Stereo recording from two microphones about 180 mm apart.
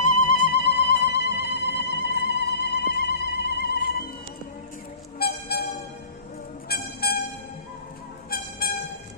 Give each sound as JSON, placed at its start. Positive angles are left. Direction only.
{"t": 0.0, "sound": "music", "side_deg": 50}
{"t": 1.8, "sound": "a sound", "side_deg": 70}
{"t": 5.2, "sound": "train", "side_deg": 60}
{"t": 6.7, "sound": "music", "side_deg": 60}
{"t": 8.3, "sound": "train", "side_deg": 55}